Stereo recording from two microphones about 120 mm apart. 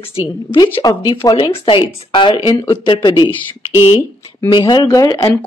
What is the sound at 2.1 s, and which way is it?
Speech, 40° left (ahead or behind).